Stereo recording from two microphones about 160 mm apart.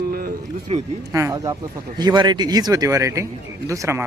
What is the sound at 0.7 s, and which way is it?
Speech, 40° right (ahead or behind).